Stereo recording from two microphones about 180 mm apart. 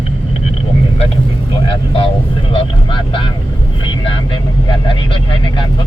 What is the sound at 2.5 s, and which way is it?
Speech, 30° left (ahead or behind).